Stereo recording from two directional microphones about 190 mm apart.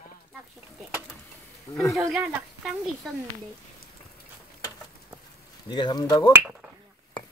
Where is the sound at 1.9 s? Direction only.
5° right (ahead or behind).